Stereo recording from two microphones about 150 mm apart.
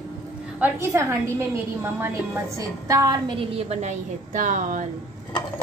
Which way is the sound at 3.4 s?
50° right (ahead or behind).